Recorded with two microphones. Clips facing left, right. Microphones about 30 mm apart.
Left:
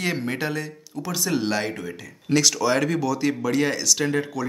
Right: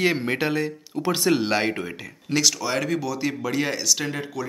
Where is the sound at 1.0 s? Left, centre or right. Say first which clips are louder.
Right 5 dB; right.